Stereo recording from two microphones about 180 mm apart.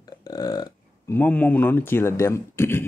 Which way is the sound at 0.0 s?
20° left (ahead or behind).